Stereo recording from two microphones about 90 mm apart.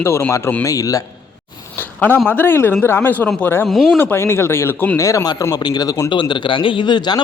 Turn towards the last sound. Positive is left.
turn(degrees=55)  # may be behind; listen again after turning